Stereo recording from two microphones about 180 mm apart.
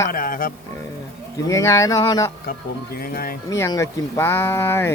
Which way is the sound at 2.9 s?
55° left (ahead or behind).